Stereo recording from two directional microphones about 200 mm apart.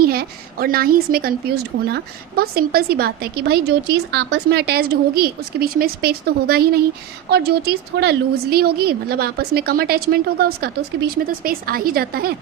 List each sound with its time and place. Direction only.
0.0 s a woman's voice: 50° right (ahead or behind)